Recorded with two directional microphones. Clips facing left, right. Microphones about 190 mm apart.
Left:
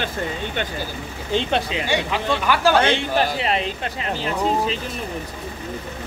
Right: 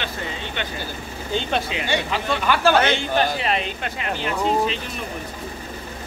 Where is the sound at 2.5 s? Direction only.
10° left (ahead or behind).